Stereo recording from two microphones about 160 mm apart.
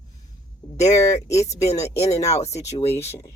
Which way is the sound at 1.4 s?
45° left (ahead or behind).